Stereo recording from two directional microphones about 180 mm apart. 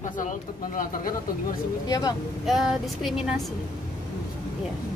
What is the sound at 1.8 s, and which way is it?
Speech, 20° left (ahead or behind).